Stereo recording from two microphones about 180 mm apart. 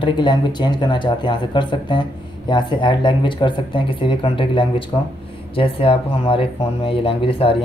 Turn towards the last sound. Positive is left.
turn(degrees=30)  # may be behind; listen again after turning